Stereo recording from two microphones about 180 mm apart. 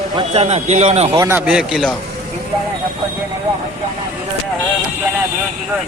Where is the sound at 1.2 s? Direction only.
10° right (ahead or behind).